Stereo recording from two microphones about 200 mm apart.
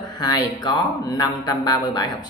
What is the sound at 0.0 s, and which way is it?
A man's voice, 20° left (ahead or behind).